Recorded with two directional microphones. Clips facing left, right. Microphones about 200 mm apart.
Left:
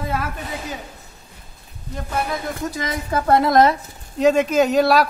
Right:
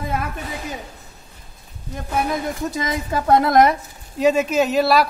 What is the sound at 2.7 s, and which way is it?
Speech, 20° right (ahead or behind).